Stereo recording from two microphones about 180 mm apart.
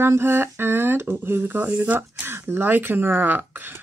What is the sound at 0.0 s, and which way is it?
Speech, 15° right (ahead or behind).